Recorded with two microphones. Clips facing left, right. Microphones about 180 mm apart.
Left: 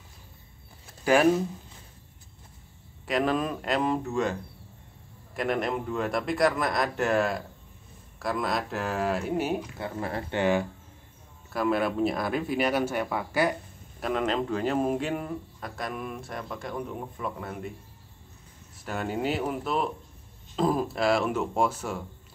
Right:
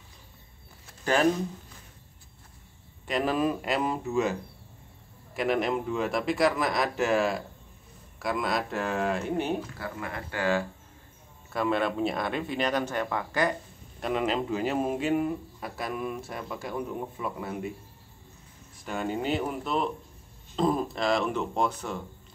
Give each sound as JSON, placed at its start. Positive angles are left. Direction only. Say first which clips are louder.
{"t": 1.0, "sound": "speech", "louder": "left 3 dB", "side_deg": 10}
{"t": 3.1, "sound": "speech", "louder": "even", "side_deg": 0}
{"t": 9.8, "sound": "speech", "louder": "left 4 dB", "side_deg": 30}
{"t": 10.4, "sound": "speech", "louder": "left 2 dB", "side_deg": 15}
{"t": 11.5, "sound": "speech", "louder": "left 1 dB", "side_deg": 5}
{"t": 18.9, "sound": "speech", "louder": "even", "side_deg": 5}